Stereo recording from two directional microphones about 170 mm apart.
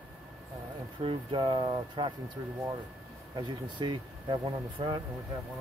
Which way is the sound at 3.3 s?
25° right (ahead or behind).